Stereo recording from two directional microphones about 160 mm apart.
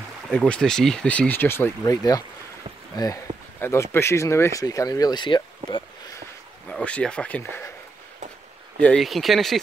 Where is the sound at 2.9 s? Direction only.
20° left (ahead or behind).